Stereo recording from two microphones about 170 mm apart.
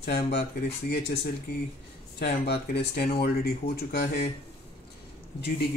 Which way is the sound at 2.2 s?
75° left (ahead or behind).